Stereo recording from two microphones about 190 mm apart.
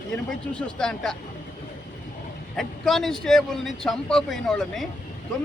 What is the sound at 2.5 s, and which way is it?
Speech, centre (ahead or behind).